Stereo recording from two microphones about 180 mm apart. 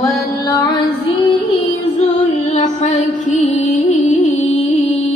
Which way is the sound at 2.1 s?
40° left (ahead or behind).